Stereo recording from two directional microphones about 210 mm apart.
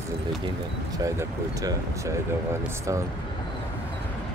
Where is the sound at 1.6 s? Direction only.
15° right (ahead or behind).